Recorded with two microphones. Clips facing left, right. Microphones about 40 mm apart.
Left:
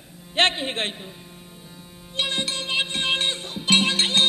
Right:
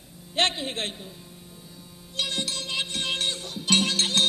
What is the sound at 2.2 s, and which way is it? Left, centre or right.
Music, left.